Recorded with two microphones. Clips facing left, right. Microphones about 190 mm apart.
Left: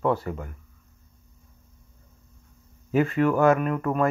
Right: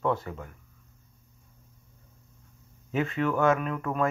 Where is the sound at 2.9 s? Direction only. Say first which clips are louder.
Left 6 dB; 5° left (ahead or behind).